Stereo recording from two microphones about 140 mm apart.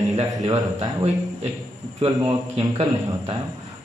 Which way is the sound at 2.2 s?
40° right (ahead or behind).